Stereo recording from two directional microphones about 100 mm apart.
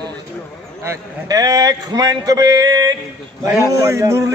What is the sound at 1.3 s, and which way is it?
A man's voice, 40° right (ahead or behind).